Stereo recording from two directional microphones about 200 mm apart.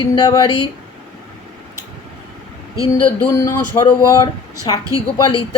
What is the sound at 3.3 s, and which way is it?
A man's voice, 15° left (ahead or behind).